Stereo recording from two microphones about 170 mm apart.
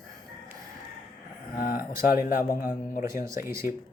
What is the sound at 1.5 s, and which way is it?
Speech, 55° left (ahead or behind).